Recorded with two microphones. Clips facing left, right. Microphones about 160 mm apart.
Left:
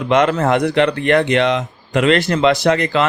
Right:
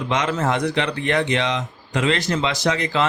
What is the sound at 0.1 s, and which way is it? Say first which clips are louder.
Speech: left 8 dB; 60° left (ahead or behind).